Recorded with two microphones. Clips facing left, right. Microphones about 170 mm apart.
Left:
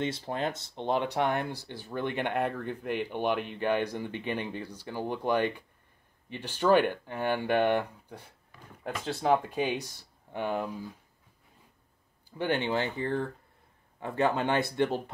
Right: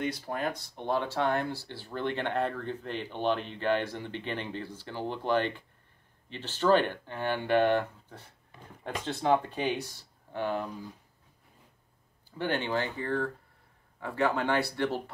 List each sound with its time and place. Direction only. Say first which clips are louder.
0.0 s speech: left 1 dB; 25° left (ahead or behind)
12.3 s speech: left 2 dB; 15° left (ahead or behind)